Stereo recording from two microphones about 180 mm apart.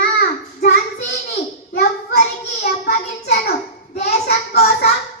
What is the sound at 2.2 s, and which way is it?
A child's voice, 40° left (ahead or behind).